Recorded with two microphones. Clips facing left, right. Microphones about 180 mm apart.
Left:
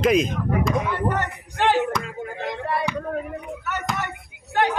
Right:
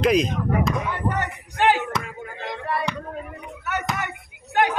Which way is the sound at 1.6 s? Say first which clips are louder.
Even; 5° right (ahead or behind).